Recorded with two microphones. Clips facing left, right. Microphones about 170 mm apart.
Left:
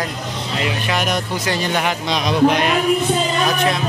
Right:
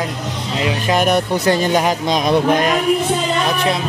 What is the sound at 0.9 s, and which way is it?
Speech, 50° right (ahead or behind).